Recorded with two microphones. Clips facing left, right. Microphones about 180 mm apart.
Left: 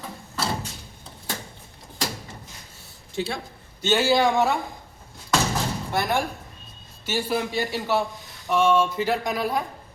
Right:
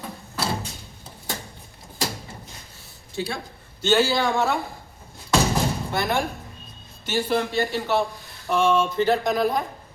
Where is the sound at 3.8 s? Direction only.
15° left (ahead or behind).